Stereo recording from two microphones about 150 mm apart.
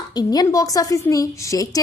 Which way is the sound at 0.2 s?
25° left (ahead or behind).